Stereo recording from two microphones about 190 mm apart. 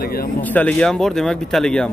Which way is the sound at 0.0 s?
50° left (ahead or behind).